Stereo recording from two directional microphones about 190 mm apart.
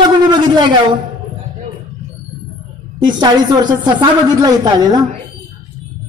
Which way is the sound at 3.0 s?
25° right (ahead or behind).